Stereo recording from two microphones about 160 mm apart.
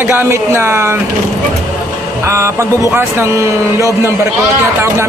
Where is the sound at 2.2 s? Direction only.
15° right (ahead or behind).